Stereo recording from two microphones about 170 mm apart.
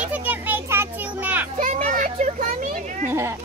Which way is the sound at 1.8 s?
55° right (ahead or behind).